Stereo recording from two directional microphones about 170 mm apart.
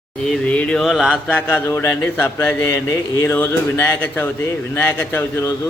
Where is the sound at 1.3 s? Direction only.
10° left (ahead or behind).